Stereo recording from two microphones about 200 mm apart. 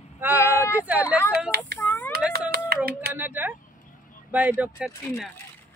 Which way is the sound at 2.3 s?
50° right (ahead or behind).